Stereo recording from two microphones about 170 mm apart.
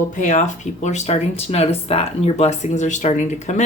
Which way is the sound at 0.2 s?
45° left (ahead or behind).